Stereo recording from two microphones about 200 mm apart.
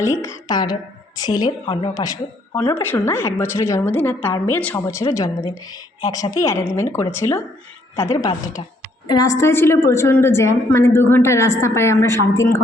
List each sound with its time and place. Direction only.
0.0 s a woman's voice: 15° left (ahead or behind)